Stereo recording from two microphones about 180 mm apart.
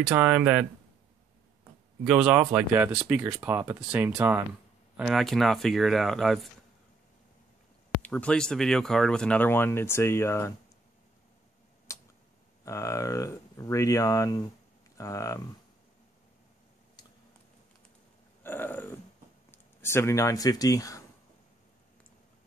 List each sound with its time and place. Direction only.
0.0 s speech: 10° right (ahead or behind)
2.0 s speech: 5° right (ahead or behind)
8.0 s speech: 5° left (ahead or behind)
11.9 s a sound: 15° left (ahead or behind)
12.6 s speech: 15° left (ahead or behind)
18.4 s grunt: 10° left (ahead or behind)
19.5 s speech: 15° left (ahead or behind)